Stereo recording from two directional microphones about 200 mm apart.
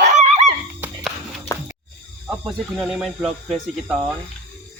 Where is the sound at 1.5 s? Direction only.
15° left (ahead or behind).